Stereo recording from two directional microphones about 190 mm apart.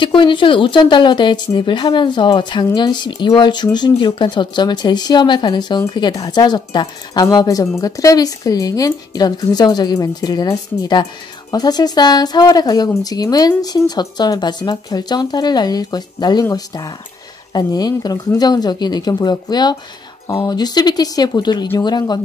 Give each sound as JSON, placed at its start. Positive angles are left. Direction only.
{"t": 0.0, "sound": "speech", "side_deg": 25}